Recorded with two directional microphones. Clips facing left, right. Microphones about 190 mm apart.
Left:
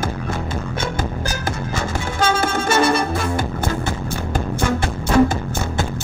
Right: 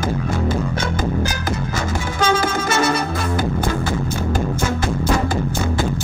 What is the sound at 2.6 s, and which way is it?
Music, 30° left (ahead or behind).